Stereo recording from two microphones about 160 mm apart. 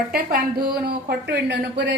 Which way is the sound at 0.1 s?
70° right (ahead or behind).